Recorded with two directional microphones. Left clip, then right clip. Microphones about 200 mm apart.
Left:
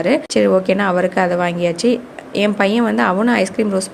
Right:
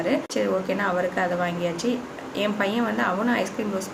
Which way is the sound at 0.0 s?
45° left (ahead or behind).